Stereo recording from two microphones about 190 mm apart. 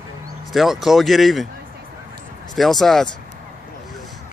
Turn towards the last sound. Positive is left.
turn(degrees=0)  # may be behind; listen again after turning